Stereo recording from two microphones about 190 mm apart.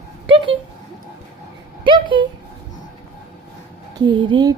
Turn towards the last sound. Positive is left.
turn(degrees=-25)  # may be behind; listen again after turning